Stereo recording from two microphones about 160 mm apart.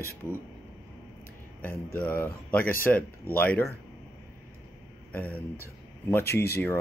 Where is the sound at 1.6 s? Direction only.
10° left (ahead or behind).